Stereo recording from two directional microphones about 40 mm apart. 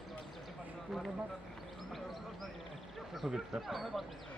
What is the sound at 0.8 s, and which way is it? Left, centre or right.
Speech, centre.